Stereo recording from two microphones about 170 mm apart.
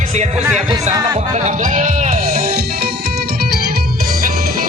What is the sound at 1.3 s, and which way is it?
Music, 45° right (ahead or behind).